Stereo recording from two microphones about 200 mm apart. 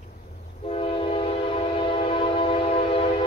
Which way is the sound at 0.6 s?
30° left (ahead or behind).